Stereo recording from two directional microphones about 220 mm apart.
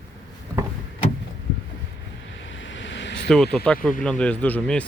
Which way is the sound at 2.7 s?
55° left (ahead or behind).